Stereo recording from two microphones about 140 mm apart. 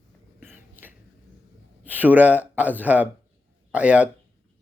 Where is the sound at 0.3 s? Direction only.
15° right (ahead or behind).